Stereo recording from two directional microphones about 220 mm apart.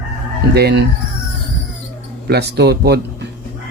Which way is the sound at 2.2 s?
45° right (ahead or behind).